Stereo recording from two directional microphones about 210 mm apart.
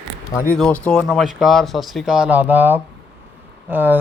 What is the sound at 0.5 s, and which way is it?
Speech, 5° left (ahead or behind).